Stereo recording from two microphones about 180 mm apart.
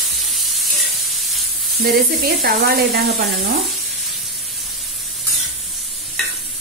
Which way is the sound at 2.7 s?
60° right (ahead or behind).